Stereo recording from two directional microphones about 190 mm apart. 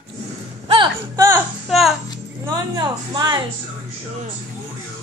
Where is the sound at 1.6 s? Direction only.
Centre (ahead or behind).